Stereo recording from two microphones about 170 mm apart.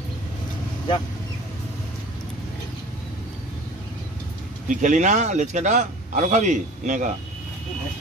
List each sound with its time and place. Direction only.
4.6 s speech: 45° right (ahead or behind)